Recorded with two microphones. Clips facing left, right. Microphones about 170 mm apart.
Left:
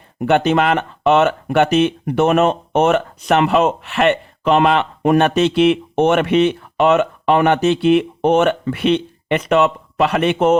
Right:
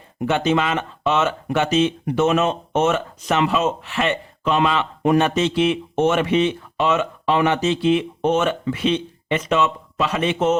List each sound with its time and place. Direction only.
0.2 s speech: 60° left (ahead or behind)